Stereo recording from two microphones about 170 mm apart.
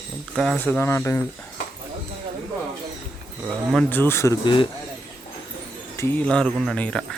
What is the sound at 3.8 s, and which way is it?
Speech, 10° left (ahead or behind).